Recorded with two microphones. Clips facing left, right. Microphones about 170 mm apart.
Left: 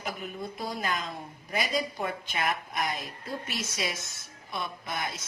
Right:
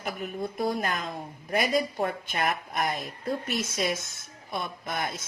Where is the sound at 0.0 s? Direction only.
55° right (ahead or behind).